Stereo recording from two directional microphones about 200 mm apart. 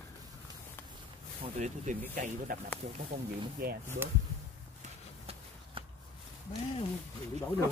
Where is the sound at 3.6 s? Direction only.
50° right (ahead or behind).